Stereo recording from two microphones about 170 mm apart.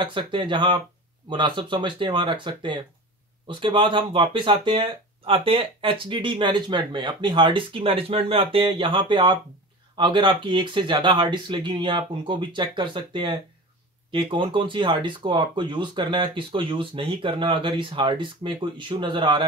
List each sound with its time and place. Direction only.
0.0 s speech: 30° right (ahead or behind)